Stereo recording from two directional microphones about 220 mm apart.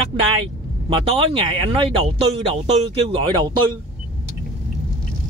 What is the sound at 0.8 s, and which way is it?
Speech, 25° right (ahead or behind).